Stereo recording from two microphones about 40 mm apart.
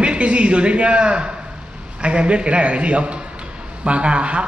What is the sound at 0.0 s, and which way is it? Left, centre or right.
A man's voice, right.